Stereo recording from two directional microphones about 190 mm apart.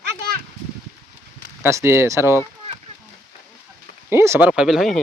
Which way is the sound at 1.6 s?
15° right (ahead or behind).